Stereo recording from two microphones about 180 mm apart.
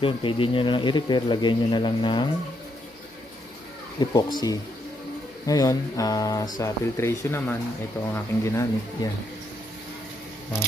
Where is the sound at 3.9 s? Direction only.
20° left (ahead or behind).